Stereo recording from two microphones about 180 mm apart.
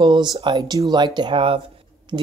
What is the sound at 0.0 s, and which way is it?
Speech, 25° right (ahead or behind).